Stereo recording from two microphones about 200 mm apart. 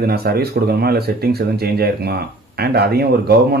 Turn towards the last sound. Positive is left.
turn(degrees=-55)  # may be behind; listen again after turning